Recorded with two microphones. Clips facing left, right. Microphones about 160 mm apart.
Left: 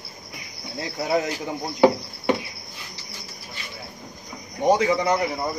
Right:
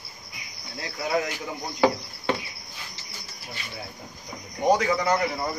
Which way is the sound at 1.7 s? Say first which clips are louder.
Left 5 dB; 20° left (ahead or behind).